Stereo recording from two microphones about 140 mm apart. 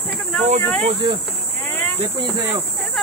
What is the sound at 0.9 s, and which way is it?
Speech, 35° right (ahead or behind).